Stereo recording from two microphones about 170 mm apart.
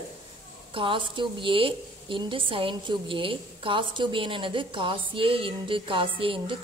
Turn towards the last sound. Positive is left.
turn(degrees=-30)  # may be behind; listen again after turning